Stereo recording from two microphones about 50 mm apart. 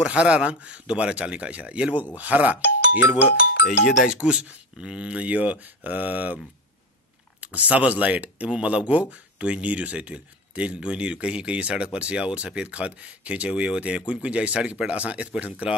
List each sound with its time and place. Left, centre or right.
0.0 s speech: right
4.2 s speech: right